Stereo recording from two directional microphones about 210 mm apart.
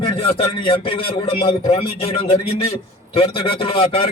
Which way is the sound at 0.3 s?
25° left (ahead or behind).